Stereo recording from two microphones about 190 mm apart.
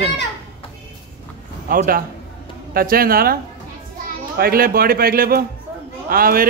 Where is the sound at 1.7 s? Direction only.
50° right (ahead or behind).